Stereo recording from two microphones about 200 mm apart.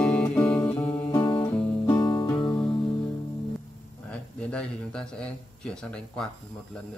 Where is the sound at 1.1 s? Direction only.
20° left (ahead or behind).